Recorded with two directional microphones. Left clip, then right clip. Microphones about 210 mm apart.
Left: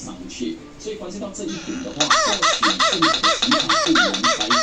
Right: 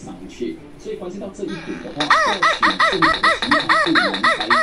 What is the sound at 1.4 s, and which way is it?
Speech, 20° right (ahead or behind).